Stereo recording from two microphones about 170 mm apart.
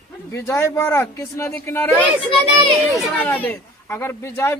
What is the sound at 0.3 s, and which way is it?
A man's voice, 15° left (ahead or behind).